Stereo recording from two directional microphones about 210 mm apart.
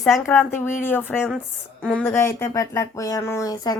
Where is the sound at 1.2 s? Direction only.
Centre (ahead or behind).